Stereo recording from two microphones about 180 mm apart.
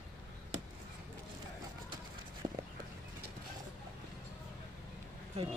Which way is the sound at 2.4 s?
25° right (ahead or behind).